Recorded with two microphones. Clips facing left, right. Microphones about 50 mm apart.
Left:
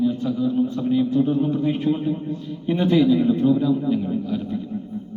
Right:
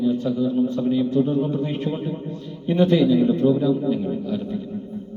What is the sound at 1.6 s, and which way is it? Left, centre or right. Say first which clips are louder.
Speech: left 4 dB; centre.